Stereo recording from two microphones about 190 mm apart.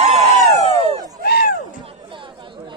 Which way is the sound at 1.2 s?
55° left (ahead or behind).